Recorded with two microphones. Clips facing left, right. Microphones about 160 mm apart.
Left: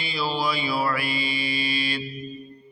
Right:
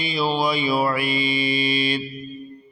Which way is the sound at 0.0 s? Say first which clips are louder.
Right 5 dB; 20° right (ahead or behind).